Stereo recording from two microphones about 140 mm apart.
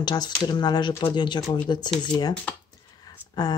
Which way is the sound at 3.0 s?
30° left (ahead or behind).